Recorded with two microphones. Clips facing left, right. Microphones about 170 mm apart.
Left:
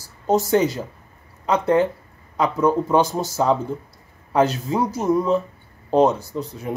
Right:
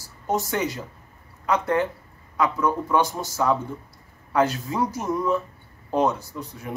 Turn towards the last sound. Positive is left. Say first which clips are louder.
# left 6 dB
turn(degrees=25)  # may be behind; listen again after turning